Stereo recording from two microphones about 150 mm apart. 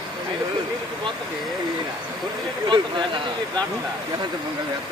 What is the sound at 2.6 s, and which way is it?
Speech, 35° right (ahead or behind).